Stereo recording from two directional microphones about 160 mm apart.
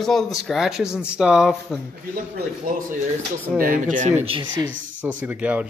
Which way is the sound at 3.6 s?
55° right (ahead or behind).